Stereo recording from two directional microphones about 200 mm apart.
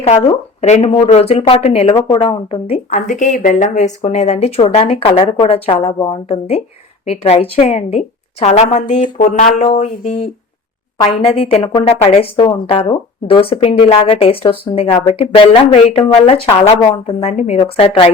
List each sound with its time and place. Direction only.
0.0 s a woman's voice: 30° left (ahead or behind)
11.0 s a woman's voice: 25° left (ahead or behind)